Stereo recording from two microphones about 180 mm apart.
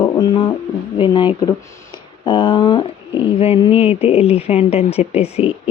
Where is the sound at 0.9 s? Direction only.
25° left (ahead or behind).